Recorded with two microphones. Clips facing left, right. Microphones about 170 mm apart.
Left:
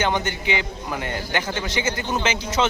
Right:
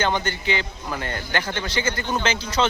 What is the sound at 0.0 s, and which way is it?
A man's voice, 15° left (ahead or behind).